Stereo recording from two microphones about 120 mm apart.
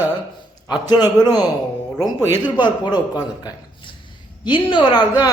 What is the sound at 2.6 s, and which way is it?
Speech, 40° left (ahead or behind).